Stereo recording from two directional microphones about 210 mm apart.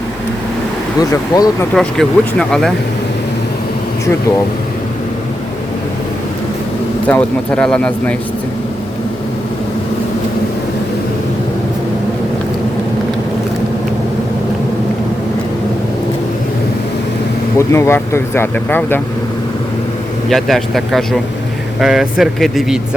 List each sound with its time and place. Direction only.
1.3 s speech: 15° left (ahead or behind)
1.7 s speech: 5° left (ahead or behind)
7.1 s speech: 5° left (ahead or behind)
17.6 s speech: 15° left (ahead or behind)
20.3 s speech: centre (ahead or behind)